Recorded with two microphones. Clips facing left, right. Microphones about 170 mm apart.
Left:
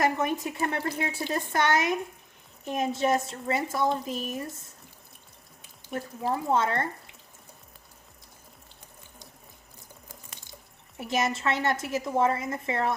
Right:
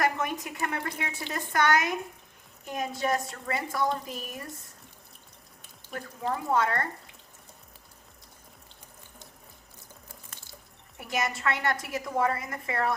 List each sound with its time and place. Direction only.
0.0 s speech: 25° left (ahead or behind)
5.9 s speech: 25° left (ahead or behind)
10.9 s speech: 25° left (ahead or behind)